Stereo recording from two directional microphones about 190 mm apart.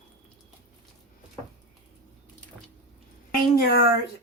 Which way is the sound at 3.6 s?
55° left (ahead or behind).